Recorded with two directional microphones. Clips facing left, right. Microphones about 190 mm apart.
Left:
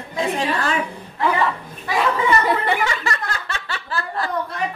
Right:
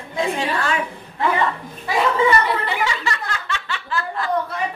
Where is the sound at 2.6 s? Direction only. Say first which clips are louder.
Left 2 dB; 50° left (ahead or behind).